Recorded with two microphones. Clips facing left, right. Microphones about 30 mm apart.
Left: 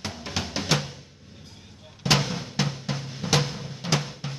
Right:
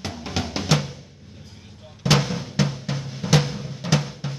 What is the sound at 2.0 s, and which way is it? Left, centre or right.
Drum, centre.